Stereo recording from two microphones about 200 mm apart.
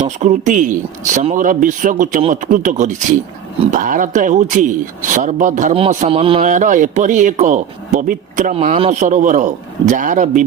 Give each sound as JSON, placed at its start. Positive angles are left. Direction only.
{"t": 0.0, "sound": "speech", "side_deg": -35}